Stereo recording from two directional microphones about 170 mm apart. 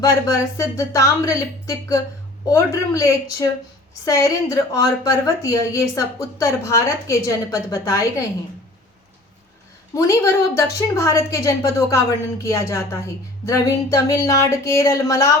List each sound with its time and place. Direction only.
0.0 s a woman's voice: 20° left (ahead or behind)
9.9 s a woman's voice: 20° left (ahead or behind)